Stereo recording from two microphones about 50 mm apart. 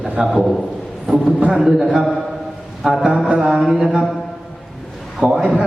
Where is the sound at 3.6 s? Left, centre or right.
Centre.